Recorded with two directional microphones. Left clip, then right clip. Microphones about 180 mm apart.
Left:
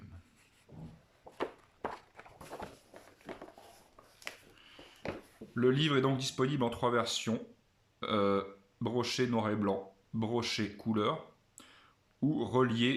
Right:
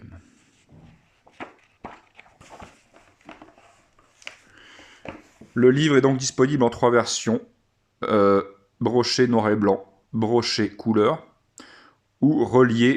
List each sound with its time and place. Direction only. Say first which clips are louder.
5.5 s speech: right 12 dB; 35° right (ahead or behind)